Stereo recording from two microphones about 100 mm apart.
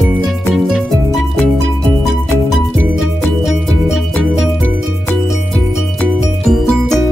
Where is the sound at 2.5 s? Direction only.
Centre (ahead or behind).